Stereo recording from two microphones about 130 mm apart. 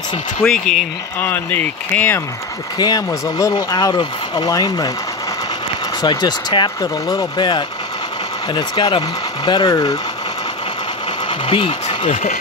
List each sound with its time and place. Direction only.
0.4 s speech: 5° left (ahead or behind)
2.8 s speech: 30° left (ahead or behind)
6.0 s speech: 35° left (ahead or behind)
11.2 s a sound: 40° left (ahead or behind)
12.1 s speech: 55° left (ahead or behind)